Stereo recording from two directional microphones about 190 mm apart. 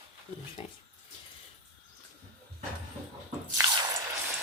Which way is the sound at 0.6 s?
30° left (ahead or behind).